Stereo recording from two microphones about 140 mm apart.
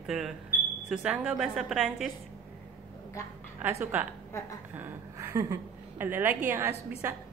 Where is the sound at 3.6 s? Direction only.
20° right (ahead or behind).